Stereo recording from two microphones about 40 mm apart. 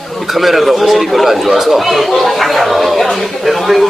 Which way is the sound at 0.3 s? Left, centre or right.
Centre.